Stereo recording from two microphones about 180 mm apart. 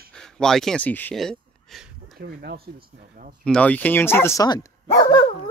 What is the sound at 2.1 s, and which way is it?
Speech, 60° right (ahead or behind).